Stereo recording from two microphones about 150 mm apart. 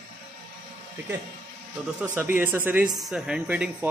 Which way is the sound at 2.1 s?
15° right (ahead or behind).